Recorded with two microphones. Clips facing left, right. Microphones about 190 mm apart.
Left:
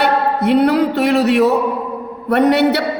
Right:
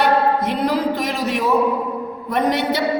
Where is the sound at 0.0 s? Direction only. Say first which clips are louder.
Left 1 dB; 70° left (ahead or behind).